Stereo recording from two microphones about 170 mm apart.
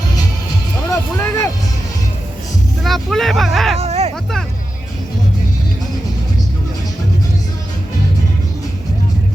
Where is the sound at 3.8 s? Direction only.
40° right (ahead or behind).